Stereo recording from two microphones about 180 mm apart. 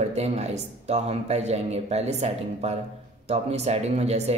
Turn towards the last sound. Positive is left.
turn(degrees=-35)  # may be behind; listen again after turning